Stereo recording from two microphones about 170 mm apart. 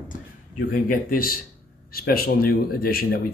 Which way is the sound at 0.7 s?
55° left (ahead or behind).